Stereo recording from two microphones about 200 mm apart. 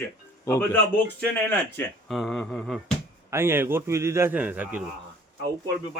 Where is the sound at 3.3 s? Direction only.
10° right (ahead or behind).